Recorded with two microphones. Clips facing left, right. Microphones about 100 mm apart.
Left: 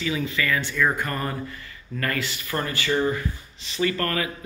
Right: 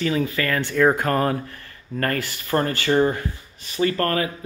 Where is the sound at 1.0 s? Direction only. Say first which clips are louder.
Right 7 dB; 70° right (ahead or behind).